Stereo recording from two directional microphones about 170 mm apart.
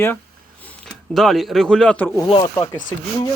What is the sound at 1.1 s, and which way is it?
Speech, centre (ahead or behind).